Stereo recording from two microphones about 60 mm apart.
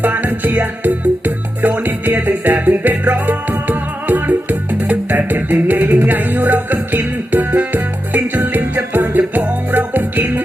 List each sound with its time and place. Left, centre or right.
0.0 s music: right